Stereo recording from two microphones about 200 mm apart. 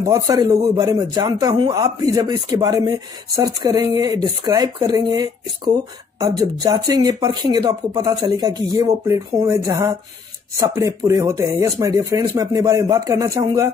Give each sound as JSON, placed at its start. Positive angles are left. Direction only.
{"t": 0.0, "sound": "speech", "side_deg": -15}